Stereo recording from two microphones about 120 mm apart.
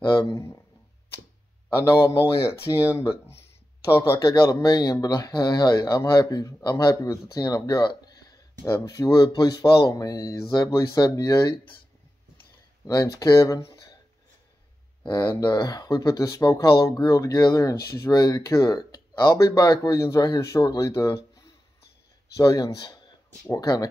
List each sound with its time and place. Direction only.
0.0 s a sound: 40° left (ahead or behind)
0.3 s speech: 25° left (ahead or behind)
2.0 s speech: 20° left (ahead or behind)
12.8 s speech: 30° left (ahead or behind)
15.4 s speech: 40° left (ahead or behind)
22.4 s speech: 30° left (ahead or behind)